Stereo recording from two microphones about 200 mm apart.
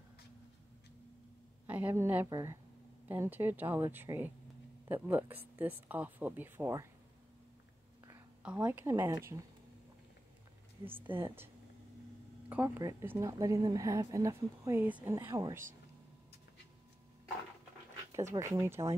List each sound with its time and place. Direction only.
1.7 s speech: 10° right (ahead or behind)
8.4 s speech: 5° right (ahead or behind)
10.9 s speech: 10° right (ahead or behind)
12.4 s speech: 10° right (ahead or behind)
18.1 s speech: 15° right (ahead or behind)